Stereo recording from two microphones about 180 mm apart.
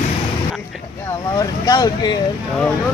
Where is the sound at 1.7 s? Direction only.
20° left (ahead or behind).